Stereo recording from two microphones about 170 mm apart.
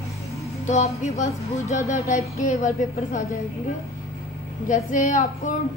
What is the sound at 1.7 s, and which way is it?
A woman's voice, 45° left (ahead or behind).